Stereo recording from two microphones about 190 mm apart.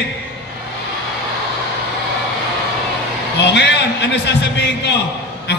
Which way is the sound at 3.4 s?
65° left (ahead or behind).